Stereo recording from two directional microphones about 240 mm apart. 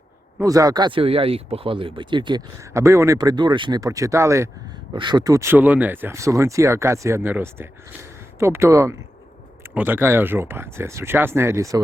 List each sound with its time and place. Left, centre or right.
0.3 s speech: centre